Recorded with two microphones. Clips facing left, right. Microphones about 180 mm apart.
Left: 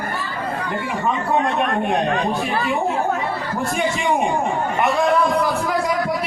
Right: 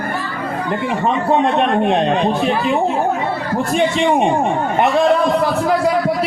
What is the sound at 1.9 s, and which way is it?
Speech, 20° right (ahead or behind).